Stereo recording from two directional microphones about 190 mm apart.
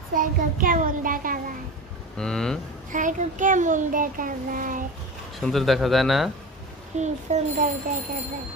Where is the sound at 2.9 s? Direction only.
40° right (ahead or behind).